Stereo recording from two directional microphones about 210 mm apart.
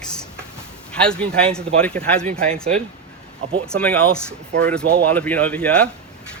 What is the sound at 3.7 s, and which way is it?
Speech, 5° left (ahead or behind).